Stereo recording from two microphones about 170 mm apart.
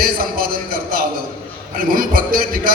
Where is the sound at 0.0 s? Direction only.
60° right (ahead or behind).